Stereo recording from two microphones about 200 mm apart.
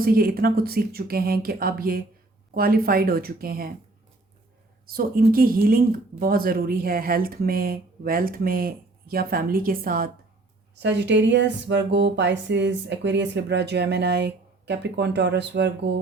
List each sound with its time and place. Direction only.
0.0 s speech: 45° right (ahead or behind)
4.9 s speech: 50° right (ahead or behind)
10.8 s speech: 60° right (ahead or behind)